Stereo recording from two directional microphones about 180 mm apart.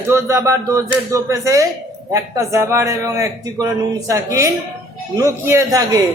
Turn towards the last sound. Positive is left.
turn(degrees=-20)  # may be behind; listen again after turning